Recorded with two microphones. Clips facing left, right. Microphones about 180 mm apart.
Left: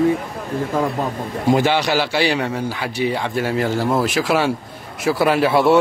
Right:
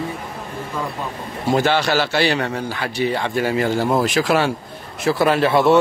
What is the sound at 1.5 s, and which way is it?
A man's voice, 15° left (ahead or behind).